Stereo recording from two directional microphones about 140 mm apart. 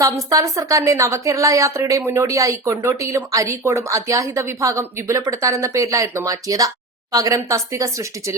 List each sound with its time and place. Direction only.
0.0 s a woman's voice: 25° right (ahead or behind)